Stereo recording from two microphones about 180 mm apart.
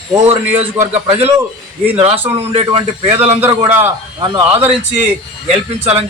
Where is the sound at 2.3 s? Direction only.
35° right (ahead or behind).